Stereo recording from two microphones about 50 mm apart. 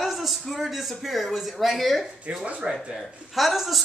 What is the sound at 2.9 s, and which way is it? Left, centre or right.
Speech, centre.